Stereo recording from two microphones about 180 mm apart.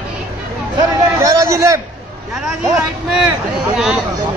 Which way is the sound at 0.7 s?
20° right (ahead or behind).